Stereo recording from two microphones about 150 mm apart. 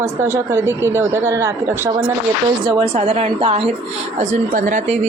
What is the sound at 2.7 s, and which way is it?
A woman's voice, 35° right (ahead or behind).